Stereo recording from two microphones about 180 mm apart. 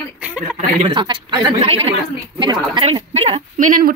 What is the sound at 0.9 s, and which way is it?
A woman's voice, 25° right (ahead or behind).